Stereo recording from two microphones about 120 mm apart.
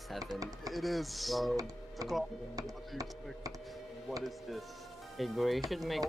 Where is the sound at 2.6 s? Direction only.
30° right (ahead or behind).